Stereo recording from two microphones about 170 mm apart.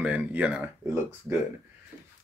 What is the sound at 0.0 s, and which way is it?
Speech, 10° right (ahead or behind).